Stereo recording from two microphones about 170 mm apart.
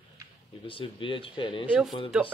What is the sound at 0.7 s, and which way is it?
Speech, 30° left (ahead or behind).